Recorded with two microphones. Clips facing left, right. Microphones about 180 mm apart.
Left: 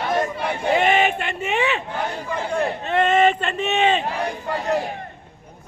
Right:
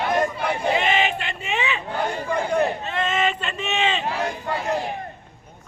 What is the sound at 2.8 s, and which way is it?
Speech, 60° left (ahead or behind).